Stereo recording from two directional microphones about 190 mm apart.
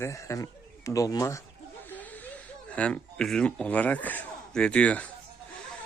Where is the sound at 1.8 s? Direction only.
10° left (ahead or behind).